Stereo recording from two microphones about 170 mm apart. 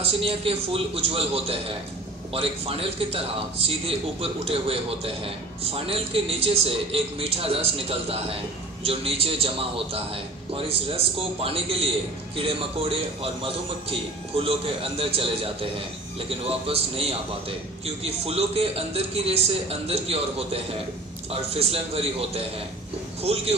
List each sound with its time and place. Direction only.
0.0 s a man's voice: 35° right (ahead or behind)